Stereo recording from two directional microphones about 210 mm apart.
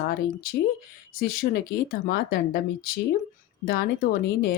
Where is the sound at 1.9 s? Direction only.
45° left (ahead or behind).